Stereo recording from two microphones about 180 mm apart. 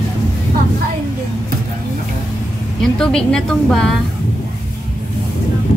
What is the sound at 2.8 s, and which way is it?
A woman's voice, centre (ahead or behind).